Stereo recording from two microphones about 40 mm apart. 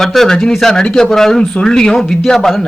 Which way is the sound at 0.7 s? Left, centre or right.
Centre.